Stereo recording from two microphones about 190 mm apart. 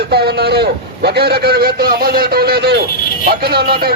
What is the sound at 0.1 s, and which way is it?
A man's voice, 60° right (ahead or behind).